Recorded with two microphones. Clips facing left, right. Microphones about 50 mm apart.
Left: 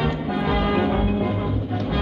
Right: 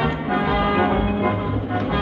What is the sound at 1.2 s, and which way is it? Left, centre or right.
Music, right.